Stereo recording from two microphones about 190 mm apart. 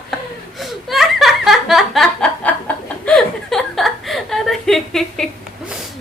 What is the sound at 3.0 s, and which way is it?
Chuckle, 5° left (ahead or behind).